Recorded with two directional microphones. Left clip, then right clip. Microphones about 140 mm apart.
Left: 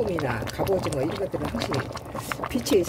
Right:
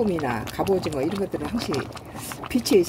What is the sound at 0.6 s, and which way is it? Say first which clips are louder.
Speech: right 2 dB; 40° right (ahead or behind).